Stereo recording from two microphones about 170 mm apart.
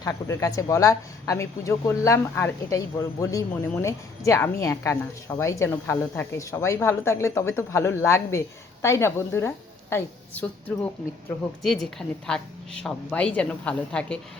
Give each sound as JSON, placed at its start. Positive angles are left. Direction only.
{"t": 0.0, "sound": "a woman's voice", "side_deg": 20}
{"t": 11.6, "sound": "a woman's voice", "side_deg": 0}